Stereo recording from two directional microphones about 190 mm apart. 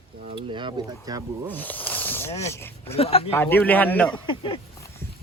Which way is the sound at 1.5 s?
10° left (ahead or behind).